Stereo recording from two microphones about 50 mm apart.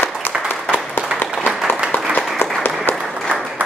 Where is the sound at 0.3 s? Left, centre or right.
Left.